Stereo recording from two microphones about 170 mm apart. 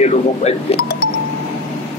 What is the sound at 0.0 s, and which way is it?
Music, 40° left (ahead or behind).